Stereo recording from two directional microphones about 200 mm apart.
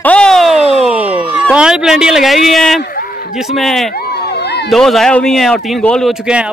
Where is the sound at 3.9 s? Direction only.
50° left (ahead or behind).